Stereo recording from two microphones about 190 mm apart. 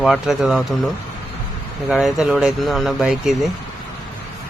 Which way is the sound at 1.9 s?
Centre (ahead or behind).